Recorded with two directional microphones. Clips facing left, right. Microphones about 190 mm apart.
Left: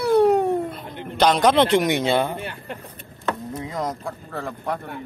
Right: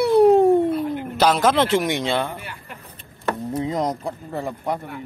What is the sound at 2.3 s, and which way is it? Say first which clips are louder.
Speech: left 4 dB; 30° left (ahead or behind).